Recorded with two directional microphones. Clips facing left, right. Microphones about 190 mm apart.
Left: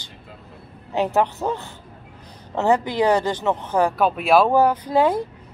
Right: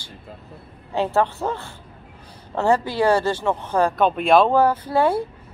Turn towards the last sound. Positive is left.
turn(degrees=15)  # may be behind; listen again after turning